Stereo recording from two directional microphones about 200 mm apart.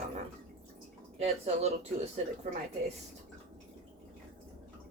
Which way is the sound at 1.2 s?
30° right (ahead or behind).